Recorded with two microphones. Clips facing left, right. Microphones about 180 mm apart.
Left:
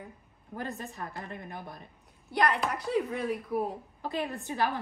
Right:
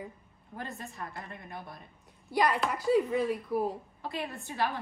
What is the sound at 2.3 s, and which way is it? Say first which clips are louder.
A woman's voice: even; centre (ahead or behind).